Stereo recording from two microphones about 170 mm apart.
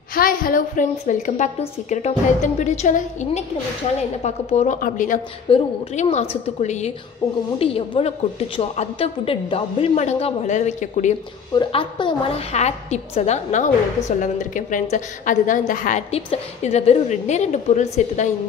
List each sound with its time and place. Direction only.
0.1 s a woman's voice: 55° left (ahead or behind); by 4.7 s 40° left (ahead or behind)
4.7 s a woman's voice: 50° left (ahead or behind)
5.5 s a woman's voice: 40° left (ahead or behind)
11.5 s a woman's voice: 30° left (ahead or behind); by 16.0 s 50° left (ahead or behind)
16.1 s a woman's voice: 35° left (ahead or behind)